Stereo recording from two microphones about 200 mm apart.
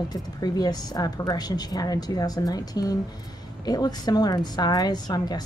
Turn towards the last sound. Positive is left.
turn(degrees=20)  # may be behind; listen again after turning